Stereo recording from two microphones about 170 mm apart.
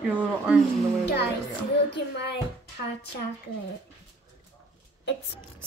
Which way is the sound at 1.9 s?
85° left.